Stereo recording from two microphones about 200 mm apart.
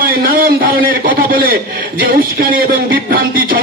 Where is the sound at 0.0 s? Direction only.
45° right (ahead or behind).